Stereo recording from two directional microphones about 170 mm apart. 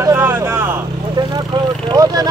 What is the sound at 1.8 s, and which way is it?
Vehicle, 20° right (ahead or behind).